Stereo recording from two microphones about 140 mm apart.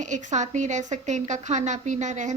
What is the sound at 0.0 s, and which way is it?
A woman's voice, 60° right (ahead or behind).